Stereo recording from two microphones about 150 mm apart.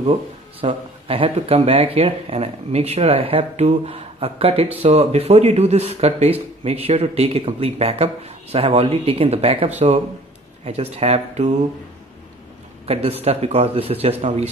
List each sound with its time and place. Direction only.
0.0 s speech: 40° right (ahead or behind)
12.8 s speech: 40° right (ahead or behind)